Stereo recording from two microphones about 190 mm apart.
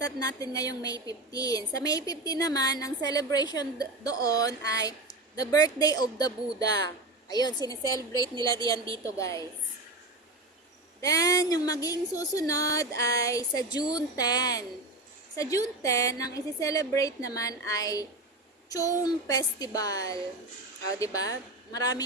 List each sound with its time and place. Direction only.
0.0 s a woman's voice: 20° left (ahead or behind)
11.0 s a woman's voice: 20° left (ahead or behind)